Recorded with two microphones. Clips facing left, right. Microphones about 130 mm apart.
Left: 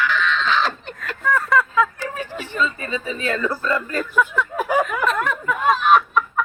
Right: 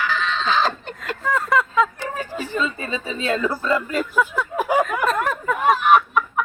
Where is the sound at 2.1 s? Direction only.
40° right (ahead or behind).